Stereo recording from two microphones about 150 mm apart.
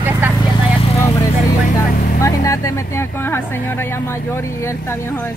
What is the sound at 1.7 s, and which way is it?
Speech, 20° left (ahead or behind).